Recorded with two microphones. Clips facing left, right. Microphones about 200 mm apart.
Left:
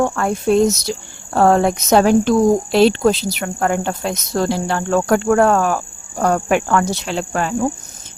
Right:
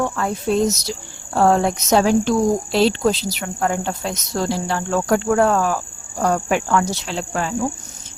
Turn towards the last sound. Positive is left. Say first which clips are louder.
# left 3 dB
turn(degrees=60)  # may be behind; listen again after turning